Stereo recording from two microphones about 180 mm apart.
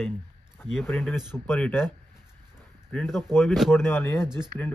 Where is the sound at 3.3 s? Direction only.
Centre (ahead or behind).